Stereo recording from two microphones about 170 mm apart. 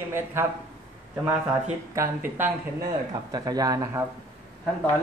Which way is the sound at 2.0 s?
10° right (ahead or behind).